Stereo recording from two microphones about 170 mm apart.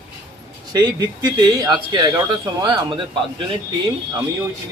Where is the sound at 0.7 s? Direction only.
25° right (ahead or behind).